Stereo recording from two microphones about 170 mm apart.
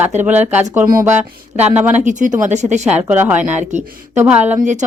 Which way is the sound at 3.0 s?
10° right (ahead or behind).